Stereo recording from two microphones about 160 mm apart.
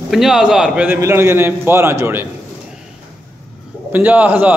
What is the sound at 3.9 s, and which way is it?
Speech, 10° right (ahead or behind).